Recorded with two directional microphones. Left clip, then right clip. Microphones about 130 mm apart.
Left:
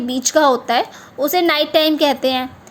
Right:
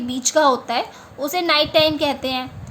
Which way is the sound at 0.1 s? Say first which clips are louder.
Left 2 dB; 40° left (ahead or behind).